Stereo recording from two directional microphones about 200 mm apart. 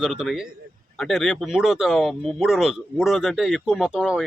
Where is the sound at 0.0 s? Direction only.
Centre (ahead or behind).